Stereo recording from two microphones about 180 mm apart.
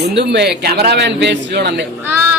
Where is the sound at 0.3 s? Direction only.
70° right (ahead or behind).